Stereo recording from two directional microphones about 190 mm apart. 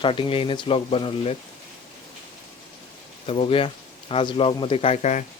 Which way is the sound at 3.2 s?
30° left (ahead or behind).